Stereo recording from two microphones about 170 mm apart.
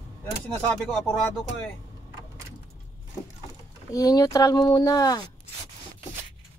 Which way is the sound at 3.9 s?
20° left (ahead or behind).